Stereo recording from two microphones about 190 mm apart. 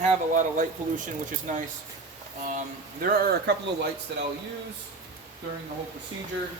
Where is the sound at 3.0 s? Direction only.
50° right (ahead or behind).